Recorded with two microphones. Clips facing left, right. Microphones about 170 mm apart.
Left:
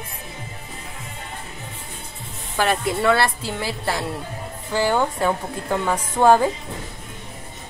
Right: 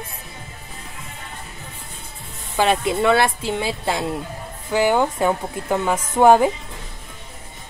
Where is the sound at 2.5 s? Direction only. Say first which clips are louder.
Right 2 dB; 20° right (ahead or behind).